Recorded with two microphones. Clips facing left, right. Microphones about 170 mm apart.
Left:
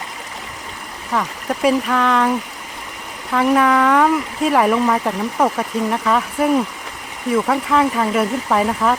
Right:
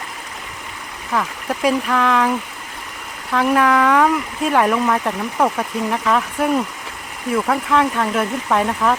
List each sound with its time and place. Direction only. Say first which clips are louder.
1.1 s speech: left 1 dB; centre (ahead or behind)
3.3 s speech: left 1 dB; centre (ahead or behind)